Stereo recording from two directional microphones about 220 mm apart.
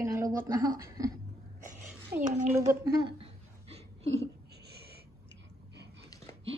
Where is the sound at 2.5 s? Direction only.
15° right (ahead or behind).